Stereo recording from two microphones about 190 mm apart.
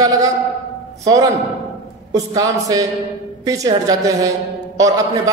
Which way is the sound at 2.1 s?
20° right (ahead or behind).